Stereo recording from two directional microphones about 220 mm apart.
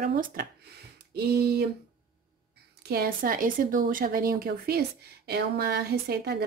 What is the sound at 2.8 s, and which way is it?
A woman's voice, 45° right (ahead or behind).